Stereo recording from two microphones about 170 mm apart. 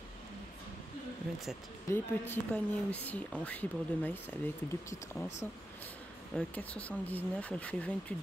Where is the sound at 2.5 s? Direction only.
10° left (ahead or behind).